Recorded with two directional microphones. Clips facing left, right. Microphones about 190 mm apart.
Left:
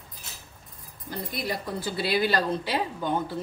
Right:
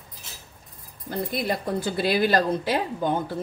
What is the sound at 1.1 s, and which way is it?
A woman's voice, 55° right (ahead or behind).